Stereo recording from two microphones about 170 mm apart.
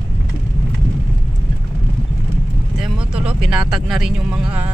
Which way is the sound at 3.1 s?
5° right (ahead or behind).